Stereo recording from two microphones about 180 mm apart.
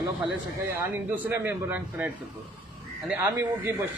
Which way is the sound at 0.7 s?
10° right (ahead or behind).